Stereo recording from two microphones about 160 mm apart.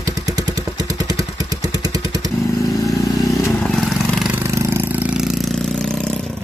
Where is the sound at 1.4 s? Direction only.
25° right (ahead or behind).